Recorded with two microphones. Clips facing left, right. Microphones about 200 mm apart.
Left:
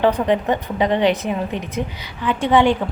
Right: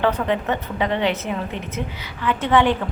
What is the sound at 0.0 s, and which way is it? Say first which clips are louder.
A woman's voice: left 4 dB; 15° left (ahead or behind).